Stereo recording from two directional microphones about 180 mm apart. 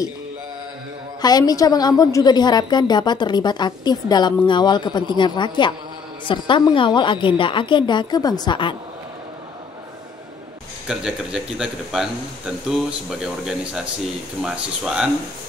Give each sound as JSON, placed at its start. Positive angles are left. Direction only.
{"t": 1.2, "sound": "a woman's voice", "side_deg": 20}
{"t": 10.9, "sound": "speech", "side_deg": -5}